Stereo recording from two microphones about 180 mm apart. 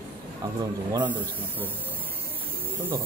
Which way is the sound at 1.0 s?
10° right (ahead or behind).